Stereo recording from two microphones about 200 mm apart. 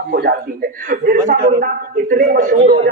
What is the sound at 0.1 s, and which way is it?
A man's voice, 50° right (ahead or behind).